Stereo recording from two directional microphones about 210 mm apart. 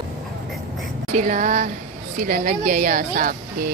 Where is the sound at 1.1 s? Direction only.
35° right (ahead or behind).